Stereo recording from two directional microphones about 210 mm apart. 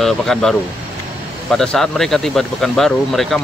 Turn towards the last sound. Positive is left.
turn(degrees=0)  # may be behind; listen again after turning